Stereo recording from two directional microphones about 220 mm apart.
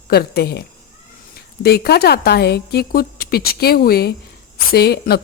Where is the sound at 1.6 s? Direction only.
45° left (ahead or behind).